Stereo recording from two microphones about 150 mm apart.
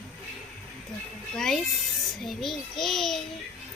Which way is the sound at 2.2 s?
Centre (ahead or behind).